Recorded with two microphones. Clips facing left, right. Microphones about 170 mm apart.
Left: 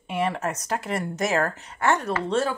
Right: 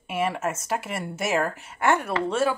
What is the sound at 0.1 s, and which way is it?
Speech, 5° right (ahead or behind).